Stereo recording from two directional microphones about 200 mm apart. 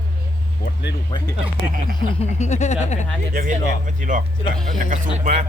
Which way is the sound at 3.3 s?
40° right (ahead or behind).